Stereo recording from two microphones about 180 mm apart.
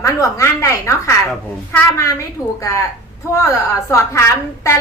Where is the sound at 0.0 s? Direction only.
15° left (ahead or behind).